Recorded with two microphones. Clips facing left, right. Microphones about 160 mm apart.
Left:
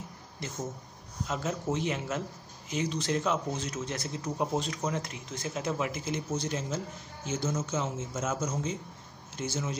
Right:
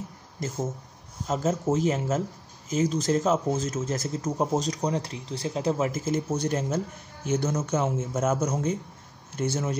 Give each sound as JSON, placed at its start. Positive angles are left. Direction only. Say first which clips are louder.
{"t": 0.4, "sound": "a man's voice", "louder": "right 6 dB", "side_deg": -45}